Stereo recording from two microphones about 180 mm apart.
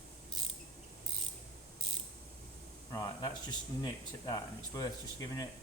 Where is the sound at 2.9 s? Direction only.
20° left (ahead or behind).